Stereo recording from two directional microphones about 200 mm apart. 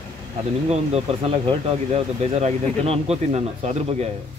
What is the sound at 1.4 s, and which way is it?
Speech, 30° right (ahead or behind).